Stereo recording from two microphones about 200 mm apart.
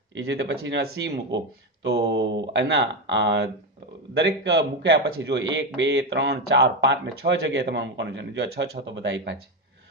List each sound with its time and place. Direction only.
0.1 s speech: 65° right (ahead or behind)